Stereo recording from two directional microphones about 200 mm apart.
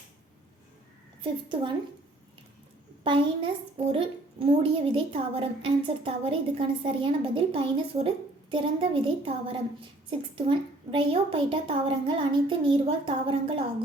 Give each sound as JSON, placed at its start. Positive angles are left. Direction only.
{"t": 1.2, "sound": "a woman's voice", "side_deg": -25}
{"t": 3.0, "sound": "a woman's voice", "side_deg": -25}
{"t": 10.9, "sound": "a woman's voice", "side_deg": -25}